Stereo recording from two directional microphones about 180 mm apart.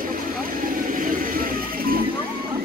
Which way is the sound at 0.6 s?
50° right (ahead or behind).